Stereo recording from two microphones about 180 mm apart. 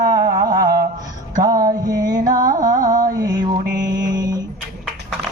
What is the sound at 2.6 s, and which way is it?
Mantra, 45° right (ahead or behind).